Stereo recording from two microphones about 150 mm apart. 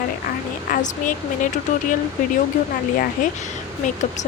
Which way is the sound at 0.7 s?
60° left (ahead or behind).